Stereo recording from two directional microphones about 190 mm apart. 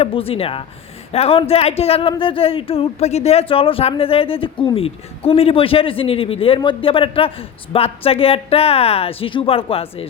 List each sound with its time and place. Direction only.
0.0 s speech: 30° left (ahead or behind)